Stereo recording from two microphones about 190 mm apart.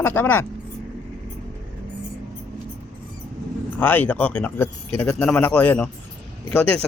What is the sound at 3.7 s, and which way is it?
Speech, 10° left (ahead or behind).